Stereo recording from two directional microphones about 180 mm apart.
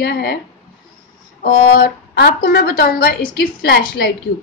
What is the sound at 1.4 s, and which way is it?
A woman's voice, 55° left (ahead or behind).